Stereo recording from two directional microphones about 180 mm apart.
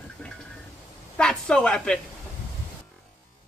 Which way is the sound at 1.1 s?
5° left (ahead or behind).